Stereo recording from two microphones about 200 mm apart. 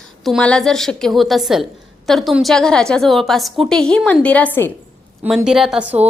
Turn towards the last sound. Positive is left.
turn(degrees=-5)  # may be behind; listen again after turning